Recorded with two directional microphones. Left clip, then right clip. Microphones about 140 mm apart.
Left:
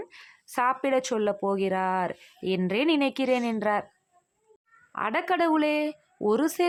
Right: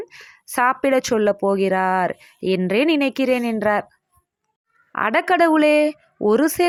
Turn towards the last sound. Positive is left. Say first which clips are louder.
# right 7 dB
turn(degrees=-30)  # may be behind; listen again after turning